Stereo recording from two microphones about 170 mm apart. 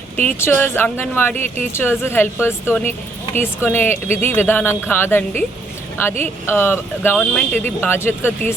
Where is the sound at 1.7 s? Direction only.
15° left (ahead or behind).